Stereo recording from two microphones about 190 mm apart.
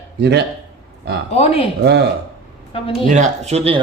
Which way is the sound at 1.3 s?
35° left (ahead or behind).